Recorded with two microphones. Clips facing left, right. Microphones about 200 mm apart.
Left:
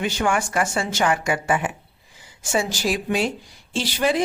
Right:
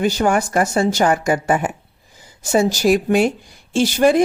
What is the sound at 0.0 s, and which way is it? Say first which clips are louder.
Speech: right 6 dB; 40° right (ahead or behind).